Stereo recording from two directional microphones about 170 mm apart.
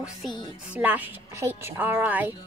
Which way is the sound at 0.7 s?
10° right (ahead or behind).